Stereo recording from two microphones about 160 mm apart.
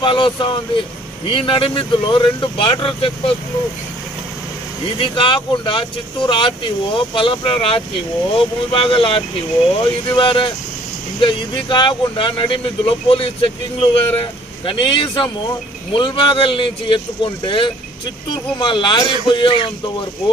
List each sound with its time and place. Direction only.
0.0 s speech: 30° left (ahead or behind)
4.9 s speech: 30° left (ahead or behind)